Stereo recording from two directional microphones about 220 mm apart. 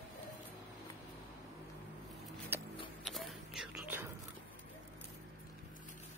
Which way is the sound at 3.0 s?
Centre (ahead or behind).